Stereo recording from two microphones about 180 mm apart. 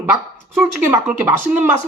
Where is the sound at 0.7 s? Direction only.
15° right (ahead or behind).